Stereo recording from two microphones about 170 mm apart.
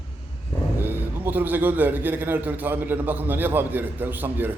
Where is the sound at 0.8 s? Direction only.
10° right (ahead or behind).